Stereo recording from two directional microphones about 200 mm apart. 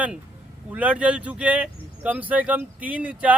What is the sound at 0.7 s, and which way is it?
Speech, 5° right (ahead or behind).